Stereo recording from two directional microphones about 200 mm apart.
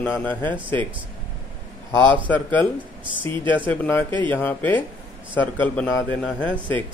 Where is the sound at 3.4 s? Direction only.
25° right (ahead or behind).